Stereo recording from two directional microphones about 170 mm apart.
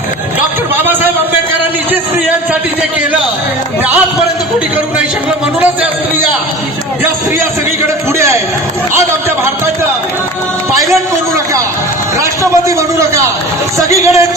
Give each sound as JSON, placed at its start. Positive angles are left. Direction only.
{"t": 12.2, "sound": "a man's voice", "side_deg": -20}